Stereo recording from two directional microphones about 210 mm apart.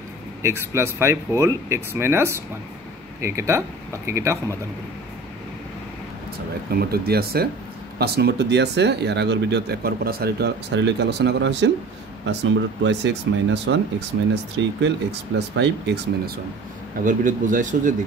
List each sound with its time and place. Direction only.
0.4 s speech: 10° right (ahead or behind)
6.7 s speech: 45° right (ahead or behind)
17.0 s speech: 40° right (ahead or behind)